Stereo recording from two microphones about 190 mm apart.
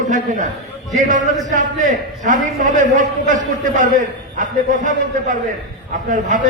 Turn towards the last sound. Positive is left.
turn(degrees=-40)  # may be behind; listen again after turning